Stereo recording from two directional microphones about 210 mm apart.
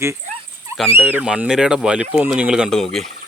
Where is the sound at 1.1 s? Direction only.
5° right (ahead or behind).